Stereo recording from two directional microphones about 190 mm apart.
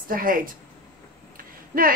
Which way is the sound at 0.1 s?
50° right (ahead or behind).